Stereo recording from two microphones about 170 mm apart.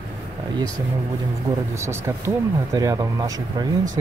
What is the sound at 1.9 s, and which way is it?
Speech, 15° right (ahead or behind).